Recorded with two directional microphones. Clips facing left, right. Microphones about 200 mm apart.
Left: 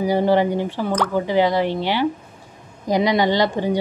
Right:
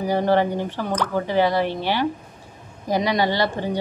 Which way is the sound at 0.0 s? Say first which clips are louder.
Left 2 dB; 10° left (ahead or behind).